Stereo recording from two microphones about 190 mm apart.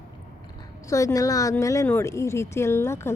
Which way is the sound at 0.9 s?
15° left (ahead or behind).